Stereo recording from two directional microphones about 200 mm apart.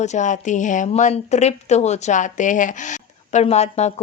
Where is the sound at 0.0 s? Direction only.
35° left (ahead or behind).